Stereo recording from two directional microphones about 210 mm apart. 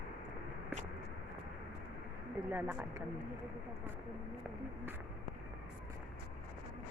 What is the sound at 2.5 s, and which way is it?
Speech, 10° right (ahead or behind).